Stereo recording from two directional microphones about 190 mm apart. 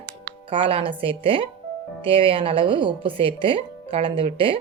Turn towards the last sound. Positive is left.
turn(degrees=-25)  # may be behind; listen again after turning